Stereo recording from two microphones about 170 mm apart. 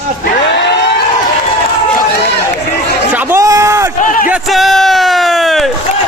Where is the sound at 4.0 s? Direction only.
55° left (ahead or behind).